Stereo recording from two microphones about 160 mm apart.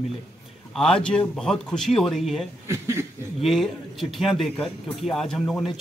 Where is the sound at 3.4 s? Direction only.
Centre (ahead or behind).